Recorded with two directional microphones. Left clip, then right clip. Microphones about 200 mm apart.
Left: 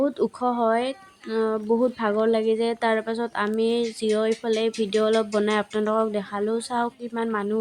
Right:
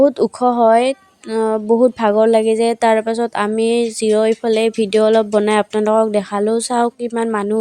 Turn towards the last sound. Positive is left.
turn(degrees=-35)  # may be behind; listen again after turning